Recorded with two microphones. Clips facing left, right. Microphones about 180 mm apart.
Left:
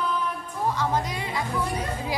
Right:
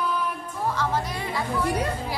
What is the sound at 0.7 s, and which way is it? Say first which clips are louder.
Speech: even; 15° left (ahead or behind).